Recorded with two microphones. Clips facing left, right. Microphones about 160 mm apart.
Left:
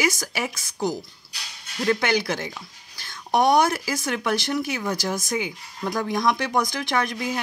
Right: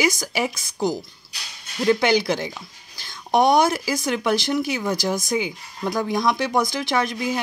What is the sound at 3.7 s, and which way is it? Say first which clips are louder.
Speech: right 3 dB; 10° right (ahead or behind).